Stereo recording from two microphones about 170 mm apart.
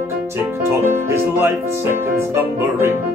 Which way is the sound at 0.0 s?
15° right (ahead or behind).